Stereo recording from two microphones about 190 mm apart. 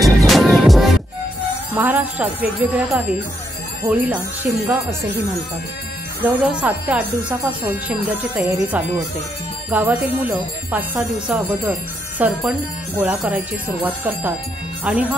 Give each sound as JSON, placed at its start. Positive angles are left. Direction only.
{"t": 0.3, "sound": "music", "side_deg": 0}
{"t": 1.7, "sound": "speech", "side_deg": -10}
{"t": 6.2, "sound": "speech", "side_deg": -10}